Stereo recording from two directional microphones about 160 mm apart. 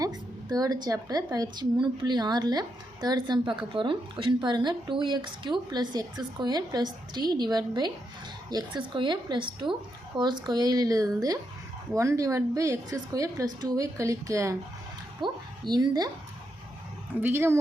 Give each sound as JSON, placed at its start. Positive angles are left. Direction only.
{"t": 0.0, "sound": "a woman's voice", "side_deg": -25}
{"t": 17.2, "sound": "speech", "side_deg": -15}